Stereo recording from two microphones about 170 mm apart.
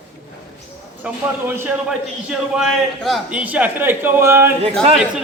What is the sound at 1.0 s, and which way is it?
A man's voice, 10° right (ahead or behind).